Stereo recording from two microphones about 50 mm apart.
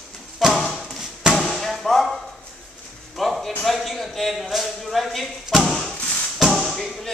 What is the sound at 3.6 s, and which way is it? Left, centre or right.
Speech, centre.